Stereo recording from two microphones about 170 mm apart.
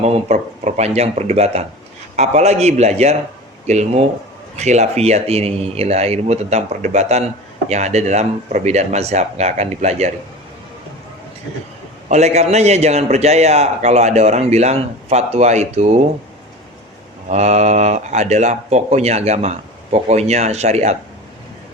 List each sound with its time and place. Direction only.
0.0 s a man's voice: 40° right (ahead or behind)
12.0 s a man's voice: 40° right (ahead or behind)
17.2 s a man's voice: 40° right (ahead or behind)